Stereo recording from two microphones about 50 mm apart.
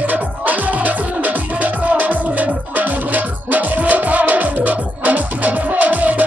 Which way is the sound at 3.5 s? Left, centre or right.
Right.